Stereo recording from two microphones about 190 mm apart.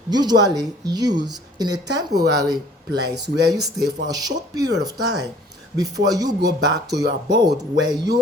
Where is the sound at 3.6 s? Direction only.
20° right (ahead or behind).